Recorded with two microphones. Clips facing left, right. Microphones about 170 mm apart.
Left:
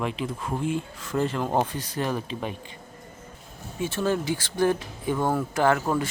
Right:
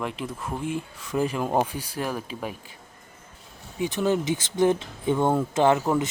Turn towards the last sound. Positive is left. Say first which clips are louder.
# right 2 dB
turn(degrees=-20)  # may be behind; listen again after turning